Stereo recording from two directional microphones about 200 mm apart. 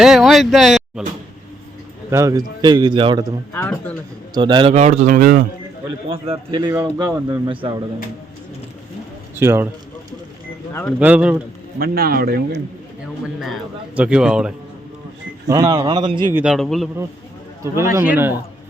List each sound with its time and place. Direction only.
0.0 s a man's voice: centre (ahead or behind)
2.0 s a man's voice: 15° right (ahead or behind)
3.5 s speech: 10° left (ahead or behind)
4.4 s a man's voice: 20° right (ahead or behind)
4.7 s speech: 35° right (ahead or behind)
6.3 s a man's voice: 25° right (ahead or behind)
9.3 s a man's voice: 10° right (ahead or behind)
11.0 s a man's voice: 5° right (ahead or behind)
11.8 s speech: 50° right (ahead or behind)
13.2 s a man's voice: 5° right (ahead or behind)
15.4 s a man's voice: 20° right (ahead or behind)
16.3 s a man's voice: 5° right (ahead or behind)
17.6 s a man's voice: 15° right (ahead or behind)